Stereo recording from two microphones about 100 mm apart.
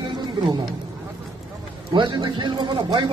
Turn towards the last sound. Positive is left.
turn(degrees=-50)  # may be behind; listen again after turning